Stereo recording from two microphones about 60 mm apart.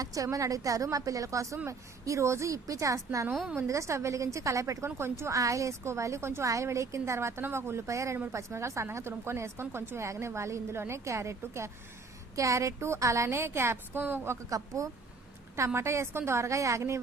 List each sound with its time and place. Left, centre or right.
0.0 s a woman's voice: right
4.9 s a woman's voice: right
14.5 s a woman's voice: right
15.5 s a woman's voice: right